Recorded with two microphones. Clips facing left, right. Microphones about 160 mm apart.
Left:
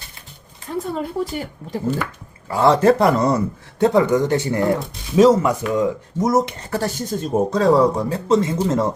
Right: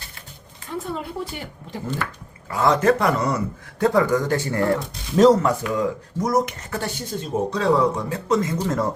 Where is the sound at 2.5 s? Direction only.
30° left (ahead or behind).